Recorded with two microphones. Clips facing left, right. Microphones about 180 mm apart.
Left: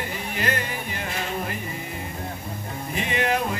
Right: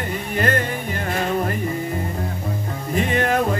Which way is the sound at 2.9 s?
50° right (ahead or behind).